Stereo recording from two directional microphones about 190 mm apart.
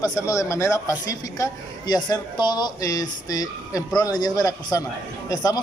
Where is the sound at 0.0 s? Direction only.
15° left (ahead or behind).